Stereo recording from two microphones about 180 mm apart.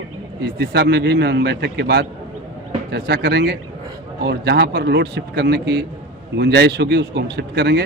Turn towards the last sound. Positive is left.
turn(degrees=-65)  # may be behind; listen again after turning